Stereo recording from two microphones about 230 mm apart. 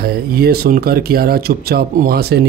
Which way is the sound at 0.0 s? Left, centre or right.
Right.